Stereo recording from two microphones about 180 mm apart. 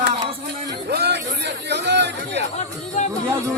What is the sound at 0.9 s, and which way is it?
Chatter, 65° right (ahead or behind).